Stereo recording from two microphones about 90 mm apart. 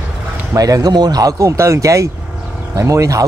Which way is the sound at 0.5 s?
40° right (ahead or behind).